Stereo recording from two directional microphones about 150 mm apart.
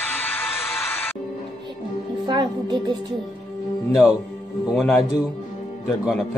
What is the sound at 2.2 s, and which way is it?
Music, 30° right (ahead or behind).